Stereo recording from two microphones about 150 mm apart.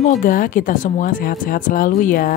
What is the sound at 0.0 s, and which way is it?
A woman's voice, 60° left (ahead or behind).